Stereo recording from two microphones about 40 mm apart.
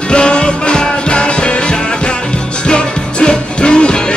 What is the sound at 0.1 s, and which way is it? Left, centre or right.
Music, left.